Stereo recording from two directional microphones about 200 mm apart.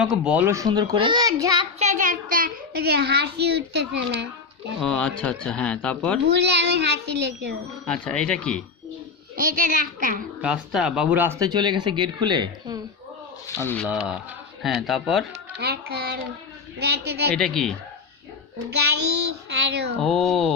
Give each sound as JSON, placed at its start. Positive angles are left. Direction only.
{"t": 0.0, "sound": "a child's voice", "side_deg": -5}
{"t": 1.8, "sound": "a child's voice", "side_deg": -40}
{"t": 4.8, "sound": "speech", "side_deg": 5}
{"t": 6.2, "sound": "a child's voice", "side_deg": -60}
{"t": 7.9, "sound": "speech", "side_deg": 5}
{"t": 9.3, "sound": "a child's voice", "side_deg": -45}
{"t": 10.4, "sound": "speech", "side_deg": -5}
{"t": 13.6, "sound": "speech", "side_deg": 10}
{"t": 13.8, "sound": "speech", "side_deg": -5}
{"t": 15.6, "sound": "a child's voice", "side_deg": -50}
{"t": 17.3, "sound": "speech", "side_deg": 5}
{"t": 19.5, "sound": "a child's voice", "side_deg": -60}
{"t": 20.0, "sound": "speech", "side_deg": 0}